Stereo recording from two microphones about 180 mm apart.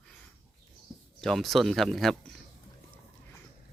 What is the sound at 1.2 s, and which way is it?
Speech, centre (ahead or behind).